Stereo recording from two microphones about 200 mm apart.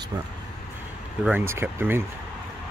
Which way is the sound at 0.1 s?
20° right (ahead or behind).